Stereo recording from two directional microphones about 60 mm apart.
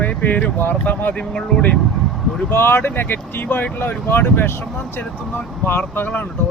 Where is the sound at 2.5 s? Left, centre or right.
Left.